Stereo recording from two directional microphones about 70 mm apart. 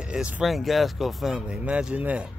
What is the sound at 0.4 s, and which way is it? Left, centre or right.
Speech, centre.